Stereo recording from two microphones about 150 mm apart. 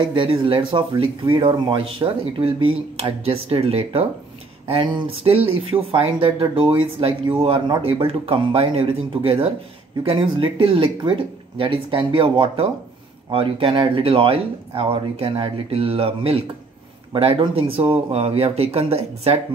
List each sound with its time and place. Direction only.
0.0 s speech: 35° right (ahead or behind)